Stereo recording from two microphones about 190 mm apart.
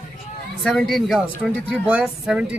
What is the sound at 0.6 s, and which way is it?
Speech, centre (ahead or behind).